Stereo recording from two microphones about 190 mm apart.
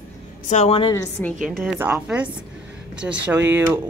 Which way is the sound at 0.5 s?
35° left (ahead or behind).